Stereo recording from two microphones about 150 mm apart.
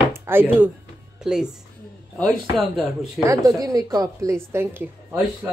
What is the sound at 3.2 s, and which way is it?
A woman's voice, 20° right (ahead or behind).